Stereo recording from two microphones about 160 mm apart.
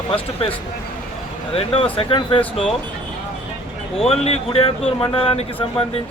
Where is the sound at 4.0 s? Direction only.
40° left (ahead or behind).